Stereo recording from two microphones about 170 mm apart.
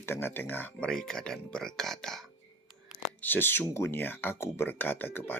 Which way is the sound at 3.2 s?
10° left (ahead or behind).